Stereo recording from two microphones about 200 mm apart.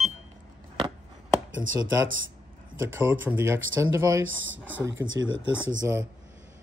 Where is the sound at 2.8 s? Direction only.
10° right (ahead or behind).